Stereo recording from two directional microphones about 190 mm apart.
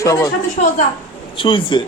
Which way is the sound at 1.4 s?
25° left (ahead or behind).